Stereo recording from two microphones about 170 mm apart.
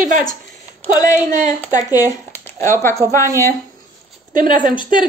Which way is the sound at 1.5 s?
20° left (ahead or behind).